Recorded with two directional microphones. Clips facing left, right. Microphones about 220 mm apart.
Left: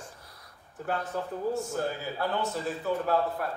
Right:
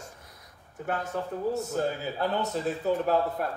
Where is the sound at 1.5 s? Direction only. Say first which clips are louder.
Right 2 dB; 20° right (ahead or behind).